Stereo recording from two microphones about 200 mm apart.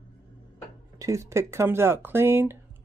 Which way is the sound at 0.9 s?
15° right (ahead or behind).